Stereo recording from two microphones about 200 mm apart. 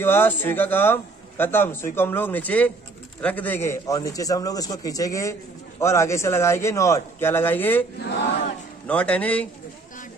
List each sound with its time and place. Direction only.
0.0 s a man's voice: 10° left (ahead or behind)
8.8 s a man's voice: 5° left (ahead or behind)